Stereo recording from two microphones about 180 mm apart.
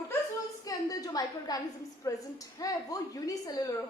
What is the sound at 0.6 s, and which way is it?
A woman's voice, 20° left (ahead or behind).